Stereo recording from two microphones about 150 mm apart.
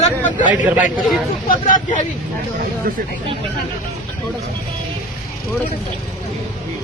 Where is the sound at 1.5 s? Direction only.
60° left (ahead or behind).